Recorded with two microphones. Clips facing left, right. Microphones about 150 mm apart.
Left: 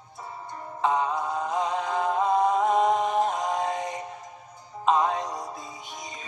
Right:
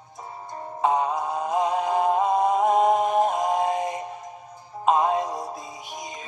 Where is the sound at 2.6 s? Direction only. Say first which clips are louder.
Right 3 dB; 50° right (ahead or behind).